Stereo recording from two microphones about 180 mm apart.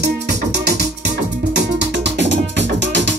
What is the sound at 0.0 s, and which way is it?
Music, 65° right (ahead or behind).